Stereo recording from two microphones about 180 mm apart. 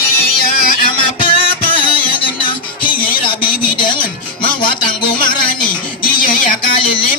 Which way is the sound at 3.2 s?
30° left (ahead or behind).